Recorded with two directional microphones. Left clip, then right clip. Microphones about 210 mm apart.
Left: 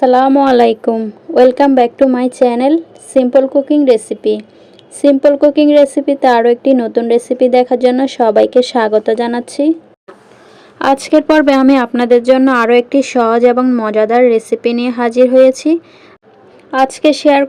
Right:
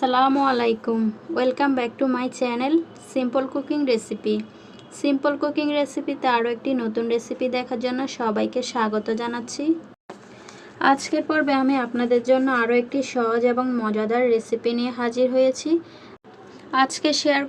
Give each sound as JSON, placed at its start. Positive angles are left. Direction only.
{"t": 0.0, "sound": "speech", "side_deg": 35}
{"t": 10.8, "sound": "speech", "side_deg": 35}
{"t": 16.7, "sound": "speech", "side_deg": 30}